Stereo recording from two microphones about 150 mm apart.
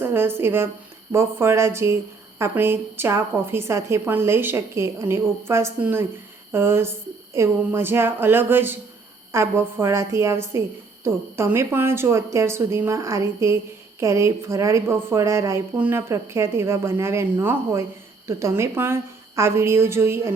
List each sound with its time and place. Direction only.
0.0 s a woman's voice: 15° right (ahead or behind)